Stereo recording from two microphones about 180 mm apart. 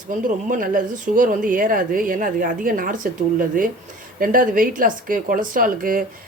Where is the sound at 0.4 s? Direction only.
50° right (ahead or behind).